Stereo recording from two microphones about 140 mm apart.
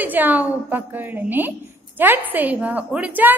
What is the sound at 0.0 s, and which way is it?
A woman's voice, 15° right (ahead or behind).